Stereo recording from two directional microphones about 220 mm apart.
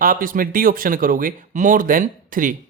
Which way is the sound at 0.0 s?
40° right (ahead or behind).